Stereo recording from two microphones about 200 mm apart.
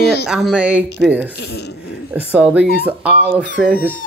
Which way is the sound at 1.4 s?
55° left (ahead or behind).